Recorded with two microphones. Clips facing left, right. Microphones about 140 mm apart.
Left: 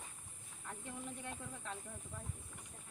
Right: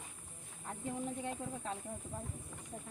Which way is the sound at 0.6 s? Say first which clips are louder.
Right 7 dB; 35° right (ahead or behind).